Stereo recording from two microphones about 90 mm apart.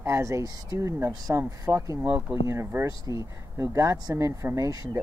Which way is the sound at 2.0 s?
20° right (ahead or behind).